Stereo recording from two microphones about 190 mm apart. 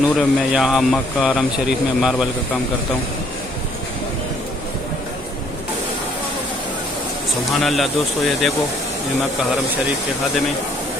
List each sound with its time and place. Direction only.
0.0 s speech: 5° right (ahead or behind)
7.6 s speech: centre (ahead or behind)